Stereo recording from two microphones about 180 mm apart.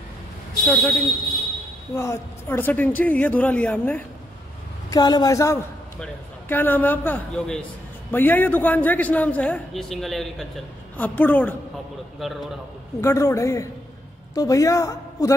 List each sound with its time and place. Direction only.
0.7 s a man's voice: centre (ahead or behind)
2.0 s a man's voice: 15° left (ahead or behind)
4.9 s a man's voice: 20° left (ahead or behind)
12.2 s a man's voice: centre (ahead or behind)
13.0 s a man's voice: 15° left (ahead or behind)